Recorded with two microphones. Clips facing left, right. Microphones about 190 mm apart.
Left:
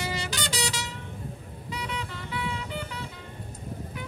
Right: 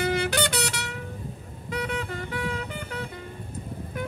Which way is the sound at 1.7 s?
50° right (ahead or behind).